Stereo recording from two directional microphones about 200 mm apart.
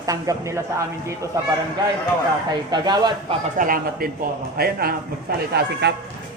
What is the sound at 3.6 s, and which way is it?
A man's voice, 45° right (ahead or behind).